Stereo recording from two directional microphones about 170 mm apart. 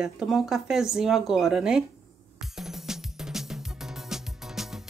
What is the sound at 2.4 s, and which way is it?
Music, centre (ahead or behind).